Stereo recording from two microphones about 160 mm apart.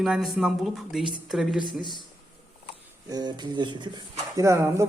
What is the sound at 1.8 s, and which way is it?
Speech, 30° left (ahead or behind).